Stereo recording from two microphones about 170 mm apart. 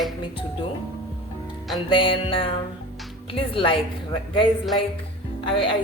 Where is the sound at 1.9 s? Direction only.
30° left (ahead or behind).